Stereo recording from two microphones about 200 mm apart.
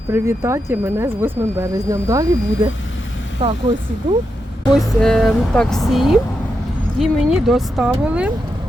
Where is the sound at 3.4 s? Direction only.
25° right (ahead or behind).